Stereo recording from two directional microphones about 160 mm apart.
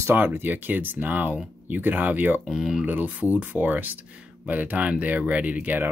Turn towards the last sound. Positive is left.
turn(degrees=-10)  # may be behind; listen again after turning